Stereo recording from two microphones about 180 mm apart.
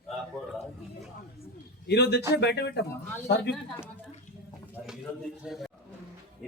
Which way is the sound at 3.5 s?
5° left (ahead or behind).